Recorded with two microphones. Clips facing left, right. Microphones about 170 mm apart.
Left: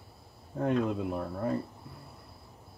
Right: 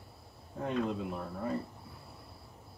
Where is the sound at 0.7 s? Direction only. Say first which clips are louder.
Left 4 dB; centre (ahead or behind).